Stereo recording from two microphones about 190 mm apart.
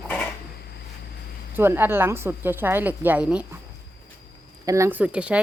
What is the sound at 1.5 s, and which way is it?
Speech, 10° right (ahead or behind).